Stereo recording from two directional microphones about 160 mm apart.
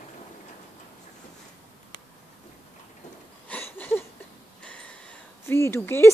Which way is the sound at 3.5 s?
10° left (ahead or behind).